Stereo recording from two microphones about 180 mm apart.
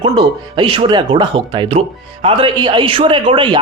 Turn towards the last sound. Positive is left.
turn(degrees=-25)  # may be behind; listen again after turning